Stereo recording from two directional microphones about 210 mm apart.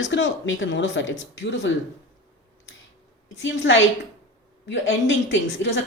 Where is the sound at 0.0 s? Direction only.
60° left (ahead or behind).